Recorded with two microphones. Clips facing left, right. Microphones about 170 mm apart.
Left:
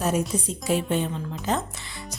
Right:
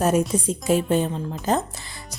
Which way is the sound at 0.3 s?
50° right (ahead or behind).